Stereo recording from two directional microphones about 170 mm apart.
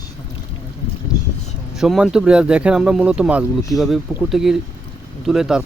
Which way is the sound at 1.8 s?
5° right (ahead or behind).